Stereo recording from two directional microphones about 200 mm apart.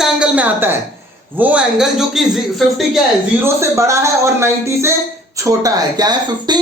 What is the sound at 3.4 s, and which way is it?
Speech, 15° right (ahead or behind).